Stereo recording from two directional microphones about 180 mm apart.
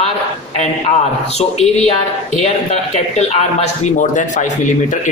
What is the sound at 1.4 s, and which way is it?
Speech, 35° left (ahead or behind).